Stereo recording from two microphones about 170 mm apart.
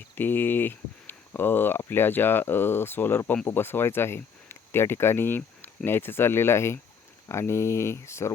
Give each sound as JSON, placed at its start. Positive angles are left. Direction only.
{"t": 0.2, "sound": "speech", "side_deg": 10}